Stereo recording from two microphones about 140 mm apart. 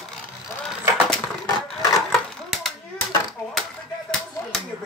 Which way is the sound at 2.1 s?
Centre (ahead or behind).